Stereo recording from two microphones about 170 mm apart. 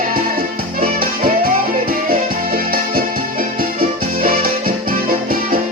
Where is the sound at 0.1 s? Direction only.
55° right (ahead or behind).